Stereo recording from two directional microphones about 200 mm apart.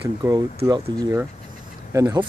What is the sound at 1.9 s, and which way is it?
Speech, 20° right (ahead or behind).